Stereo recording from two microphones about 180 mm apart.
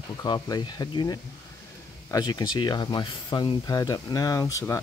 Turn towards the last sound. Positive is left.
turn(degrees=15)  # may be behind; listen again after turning